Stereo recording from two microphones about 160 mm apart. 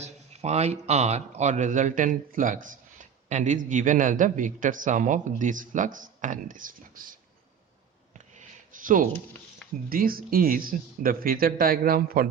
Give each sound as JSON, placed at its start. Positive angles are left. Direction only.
{"t": 0.0, "sound": "speech", "side_deg": -45}
{"t": 8.4, "sound": "a sound", "side_deg": -55}
{"t": 9.9, "sound": "speech", "side_deg": -65}